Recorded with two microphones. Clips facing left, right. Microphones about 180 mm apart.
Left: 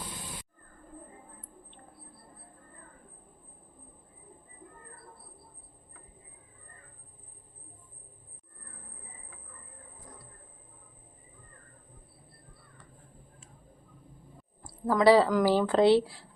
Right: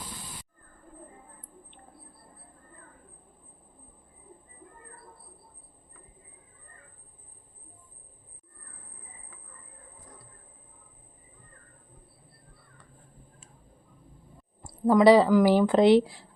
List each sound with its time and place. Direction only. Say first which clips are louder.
14.6 s a woman's voice: right 4 dB; 20° right (ahead or behind)